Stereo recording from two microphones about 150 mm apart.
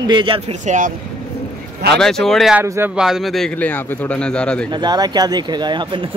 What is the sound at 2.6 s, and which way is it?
Speech, 20° right (ahead or behind).